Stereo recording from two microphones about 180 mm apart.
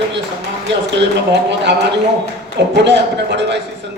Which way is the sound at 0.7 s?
80° right.